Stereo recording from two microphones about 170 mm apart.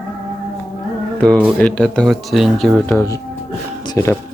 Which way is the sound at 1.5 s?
5° left (ahead or behind).